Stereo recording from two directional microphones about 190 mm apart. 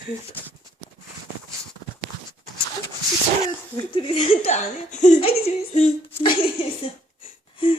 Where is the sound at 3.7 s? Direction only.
25° left (ahead or behind).